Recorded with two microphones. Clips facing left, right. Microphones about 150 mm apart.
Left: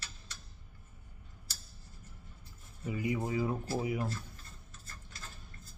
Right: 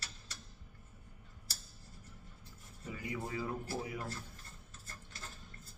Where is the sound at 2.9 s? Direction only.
15° left (ahead or behind).